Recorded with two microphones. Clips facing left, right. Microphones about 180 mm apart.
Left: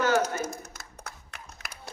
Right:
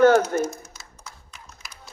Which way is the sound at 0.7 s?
60° left (ahead or behind).